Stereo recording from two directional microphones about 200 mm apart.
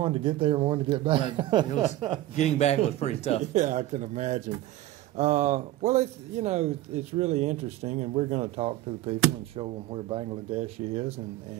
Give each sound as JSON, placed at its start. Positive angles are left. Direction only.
{"t": 0.0, "sound": "speech", "side_deg": -25}
{"t": 2.3, "sound": "a man's voice", "side_deg": 35}
{"t": 3.5, "sound": "speech", "side_deg": -35}